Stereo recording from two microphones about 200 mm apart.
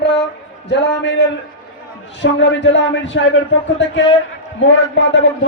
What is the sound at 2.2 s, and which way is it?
Music, 65° left (ahead or behind).